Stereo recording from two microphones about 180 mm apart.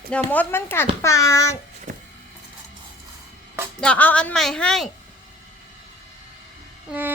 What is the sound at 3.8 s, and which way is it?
A woman's voice, 10° left (ahead or behind).